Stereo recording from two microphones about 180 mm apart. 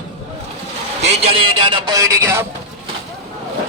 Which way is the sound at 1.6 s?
25° right (ahead or behind).